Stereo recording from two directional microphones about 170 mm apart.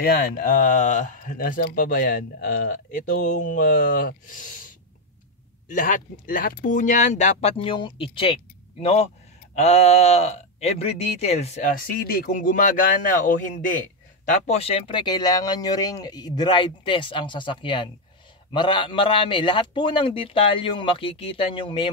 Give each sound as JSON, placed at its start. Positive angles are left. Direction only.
{"t": 0.0, "sound": "speech", "side_deg": 60}
{"t": 11.8, "sound": "speech", "side_deg": 65}